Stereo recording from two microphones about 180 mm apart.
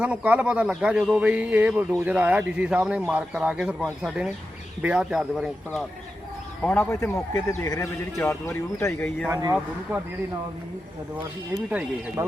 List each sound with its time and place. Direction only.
0.0 s speech: 5° right (ahead or behind)
9.2 s speech: 15° right (ahead or behind)
11.7 s speech: 5° right (ahead or behind)